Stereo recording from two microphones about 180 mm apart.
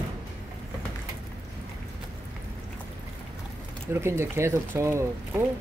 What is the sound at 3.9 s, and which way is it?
Speech, 15° right (ahead or behind).